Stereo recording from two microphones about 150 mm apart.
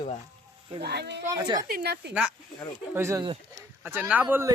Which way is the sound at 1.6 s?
85° right.